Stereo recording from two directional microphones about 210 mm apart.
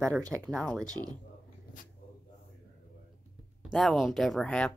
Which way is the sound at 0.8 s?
20° right (ahead or behind).